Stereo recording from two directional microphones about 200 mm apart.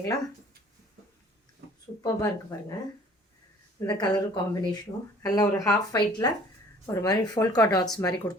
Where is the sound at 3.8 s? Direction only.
20° left (ahead or behind).